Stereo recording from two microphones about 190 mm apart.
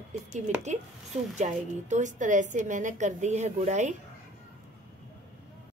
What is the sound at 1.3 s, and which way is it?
A woman's voice, 40° right (ahead or behind).